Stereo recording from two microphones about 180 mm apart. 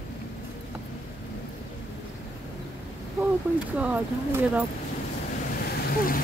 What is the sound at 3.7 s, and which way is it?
Speech, 10° right (ahead or behind).